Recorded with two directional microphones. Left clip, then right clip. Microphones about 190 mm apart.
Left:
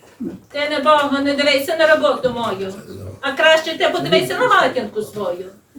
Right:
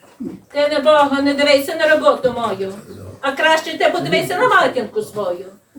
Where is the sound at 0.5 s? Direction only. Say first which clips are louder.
Right 2 dB; 20° left (ahead or behind).